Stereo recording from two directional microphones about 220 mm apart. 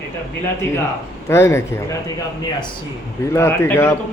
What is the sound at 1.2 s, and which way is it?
Speech, 10° left (ahead or behind).